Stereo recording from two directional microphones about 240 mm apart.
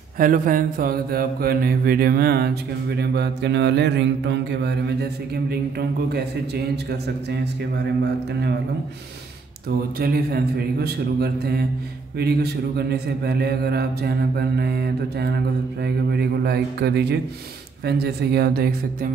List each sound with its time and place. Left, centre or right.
0.2 s speech: right
3.0 s mantra: right
9.9 s speech: right
15.8 s mantra: right
17.8 s speech: right